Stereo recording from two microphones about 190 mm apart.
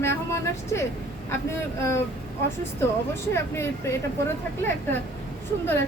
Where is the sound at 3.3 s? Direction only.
15° left (ahead or behind).